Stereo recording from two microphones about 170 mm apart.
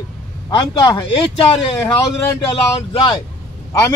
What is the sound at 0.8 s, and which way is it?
Speech, 30° left (ahead or behind).